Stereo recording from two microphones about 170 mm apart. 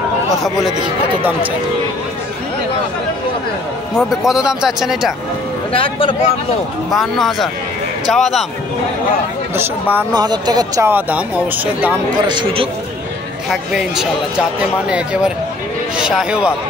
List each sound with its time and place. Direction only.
0.3 s speech: centre (ahead or behind)
4.2 s speech: 5° right (ahead or behind)
5.7 s a man's voice: 30° left (ahead or behind)
6.9 s speech: centre (ahead or behind)
9.6 s speech: 10° right (ahead or behind)
10.1 s speech: 25° right (ahead or behind)
10.9 s speech: 10° right (ahead or behind)
12.3 s speech: 30° right (ahead or behind)
13.5 s speech: 5° right (ahead or behind)